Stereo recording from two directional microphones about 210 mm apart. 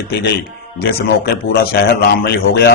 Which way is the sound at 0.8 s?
50° left (ahead or behind).